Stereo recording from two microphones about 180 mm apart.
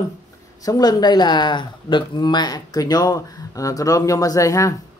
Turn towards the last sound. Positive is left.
turn(degrees=15)  # may be behind; listen again after turning